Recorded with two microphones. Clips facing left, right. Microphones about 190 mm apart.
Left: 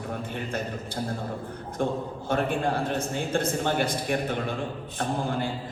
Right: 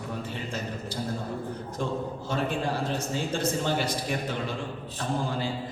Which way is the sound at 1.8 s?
55° left (ahead or behind).